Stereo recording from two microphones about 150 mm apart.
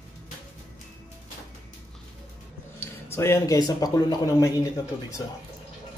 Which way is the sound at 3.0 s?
15° left (ahead or behind).